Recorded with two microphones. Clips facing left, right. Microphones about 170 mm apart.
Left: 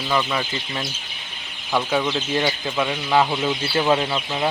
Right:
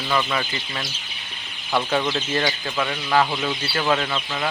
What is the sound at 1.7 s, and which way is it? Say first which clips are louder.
Speech: left 1 dB; 10° left (ahead or behind).